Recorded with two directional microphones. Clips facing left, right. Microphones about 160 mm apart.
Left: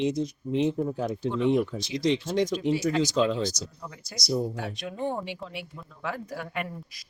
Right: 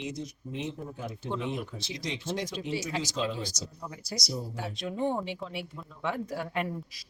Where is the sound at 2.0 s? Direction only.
90° left.